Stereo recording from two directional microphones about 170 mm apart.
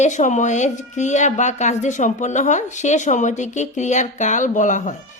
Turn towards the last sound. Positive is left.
turn(degrees=45)  # may be behind; listen again after turning